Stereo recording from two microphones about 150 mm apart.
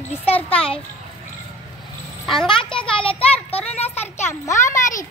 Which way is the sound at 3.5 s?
10° left (ahead or behind).